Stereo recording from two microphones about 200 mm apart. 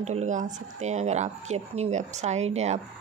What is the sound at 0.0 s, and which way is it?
Speech, 35° right (ahead or behind).